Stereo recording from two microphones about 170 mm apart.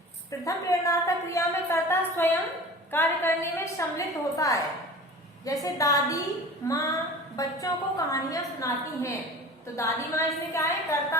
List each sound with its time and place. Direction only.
0.3 s a woman's voice: 20° left (ahead or behind)
5.6 s a woman's voice: 20° left (ahead or behind)